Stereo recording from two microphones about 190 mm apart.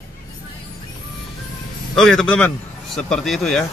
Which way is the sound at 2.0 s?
5° left (ahead or behind).